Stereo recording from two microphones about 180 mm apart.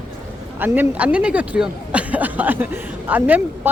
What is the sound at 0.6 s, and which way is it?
Speech, 10° right (ahead or behind).